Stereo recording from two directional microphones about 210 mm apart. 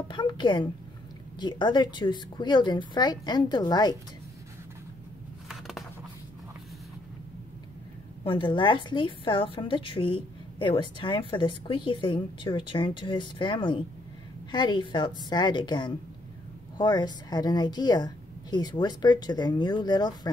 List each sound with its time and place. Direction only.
0.1 s a woman's voice: 20° left (ahead or behind)
5.5 s a sound: centre (ahead or behind)
8.2 s a woman's voice: 25° left (ahead or behind)